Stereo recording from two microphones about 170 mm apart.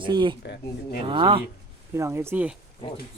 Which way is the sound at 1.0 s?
30° right (ahead or behind).